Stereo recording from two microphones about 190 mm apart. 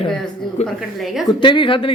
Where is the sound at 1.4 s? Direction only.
25° left (ahead or behind).